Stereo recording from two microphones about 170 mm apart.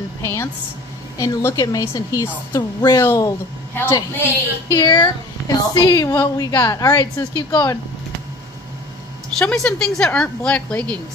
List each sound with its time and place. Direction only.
0.2 s a woman's voice: 15° left (ahead or behind)
4.7 s a woman's voice: 25° left (ahead or behind)
9.4 s a woman's voice: 5° left (ahead or behind)